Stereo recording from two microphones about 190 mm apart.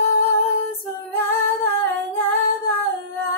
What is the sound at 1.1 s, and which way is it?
Female singing, 10° left (ahead or behind).